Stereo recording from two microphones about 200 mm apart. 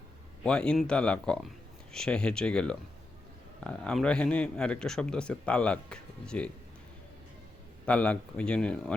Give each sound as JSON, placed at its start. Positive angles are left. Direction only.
{"t": 0.4, "sound": "a man's voice", "side_deg": 5}
{"t": 7.9, "sound": "a man's voice", "side_deg": 5}